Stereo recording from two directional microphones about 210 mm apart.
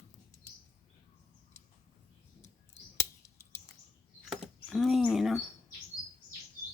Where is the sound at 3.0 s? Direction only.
15° left (ahead or behind).